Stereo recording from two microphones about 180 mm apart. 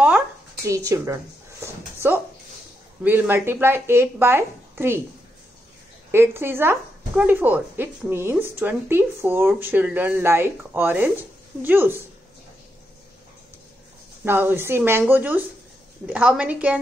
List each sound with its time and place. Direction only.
0.0 s a sound: 15° right (ahead or behind)
3.0 s speech: 10° right (ahead or behind)
6.1 s speech: 15° right (ahead or behind)
14.2 s speech: 10° right (ahead or behind)